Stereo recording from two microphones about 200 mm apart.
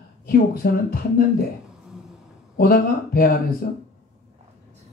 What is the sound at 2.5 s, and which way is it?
Speech, 50° left (ahead or behind).